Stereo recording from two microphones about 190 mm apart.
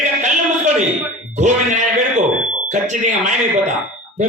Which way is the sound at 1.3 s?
40° right (ahead or behind).